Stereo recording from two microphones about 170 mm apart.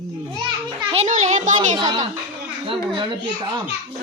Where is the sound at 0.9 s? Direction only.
40° right (ahead or behind).